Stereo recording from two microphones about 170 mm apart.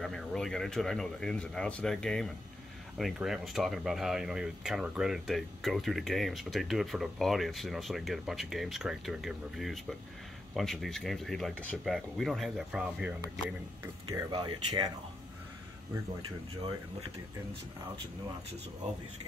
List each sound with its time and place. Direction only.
0.0 s speech: centre (ahead or behind)
14.1 s speech: 25° right (ahead or behind)